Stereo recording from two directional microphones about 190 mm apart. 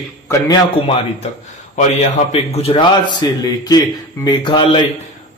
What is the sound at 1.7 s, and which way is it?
Speech, 35° left (ahead or behind).